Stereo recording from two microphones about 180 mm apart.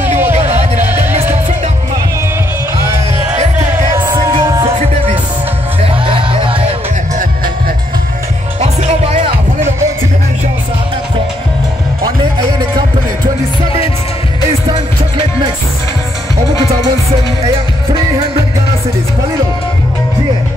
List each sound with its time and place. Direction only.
0.2 s music: 10° right (ahead or behind)
2.8 s music: 15° right (ahead or behind)
4.6 s music: 30° right (ahead or behind)
8.5 s music: 35° right (ahead or behind)
12.0 s music: 25° right (ahead or behind)
14.7 s music: 25° right (ahead or behind)